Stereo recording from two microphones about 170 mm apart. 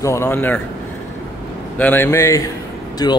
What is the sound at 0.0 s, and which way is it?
Speech, 15° left (ahead or behind).